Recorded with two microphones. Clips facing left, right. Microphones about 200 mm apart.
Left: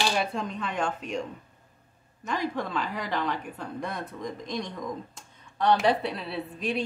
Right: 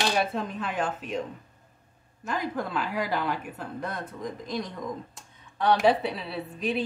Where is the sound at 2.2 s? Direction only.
5° right (ahead or behind).